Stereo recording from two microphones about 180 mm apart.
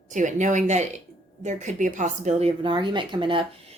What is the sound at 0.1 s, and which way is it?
A woman's voice, 45° right (ahead or behind).